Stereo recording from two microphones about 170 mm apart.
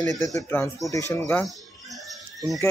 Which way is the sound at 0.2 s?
20° left (ahead or behind).